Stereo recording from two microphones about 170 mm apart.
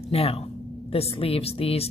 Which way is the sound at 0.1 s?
35° left (ahead or behind).